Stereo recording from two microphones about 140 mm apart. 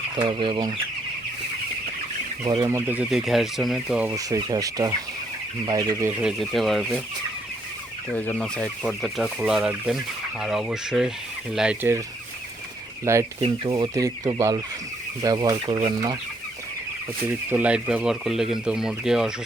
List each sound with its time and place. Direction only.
0.2 s speech: 35° right (ahead or behind)
2.6 s speech: 15° right (ahead or behind)
3.1 s speech: centre (ahead or behind)
4.1 s speech: 25° right (ahead or behind)
6.2 s speech: centre (ahead or behind)
8.1 s chicken: 10° left (ahead or behind)
8.8 s speech: centre (ahead or behind); by 12.0 s 15° right (ahead or behind)
13.1 s speech: 20° right (ahead or behind)
13.4 s speech: 35° right (ahead or behind)
17.2 s speech: 10° right (ahead or behind)